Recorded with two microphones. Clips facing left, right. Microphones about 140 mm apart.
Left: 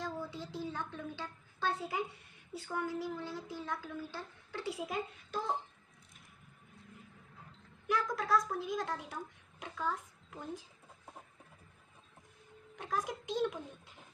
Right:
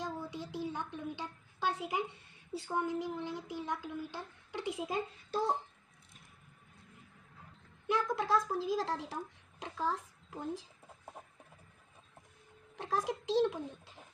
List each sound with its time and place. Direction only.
0.0 s a sound: 15° right (ahead or behind)
2.5 s speech: 25° right (ahead or behind)
7.8 s speech: 25° right (ahead or behind)
12.7 s speech: 25° right (ahead or behind)